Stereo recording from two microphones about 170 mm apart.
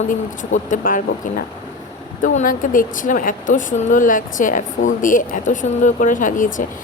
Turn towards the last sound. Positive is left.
turn(degrees=50)  # may be behind; listen again after turning